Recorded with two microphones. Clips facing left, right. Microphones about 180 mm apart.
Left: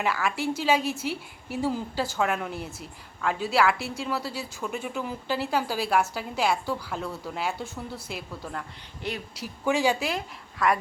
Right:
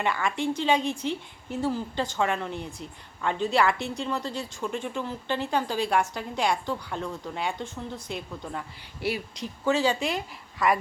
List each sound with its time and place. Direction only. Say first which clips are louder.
0.0 s a woman's voice: even; 5° left (ahead or behind)
9.0 s speech: right 4 dB; 5° right (ahead or behind)
9.3 s a woman's voice: left 1 dB; 10° left (ahead or behind)